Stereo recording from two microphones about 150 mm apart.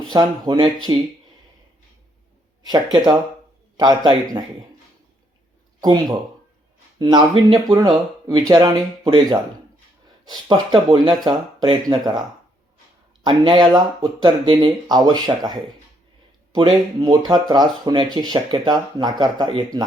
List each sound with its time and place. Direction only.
0.1 s speech: 25° right (ahead or behind)
2.6 s speech: 25° right (ahead or behind)
5.8 s speech: 30° right (ahead or behind)
13.2 s speech: 30° right (ahead or behind)